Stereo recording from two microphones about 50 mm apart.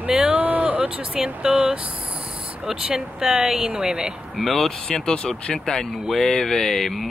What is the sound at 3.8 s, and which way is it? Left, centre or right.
Speech, right.